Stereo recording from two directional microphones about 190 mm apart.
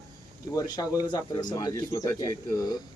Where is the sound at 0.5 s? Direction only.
20° left (ahead or behind).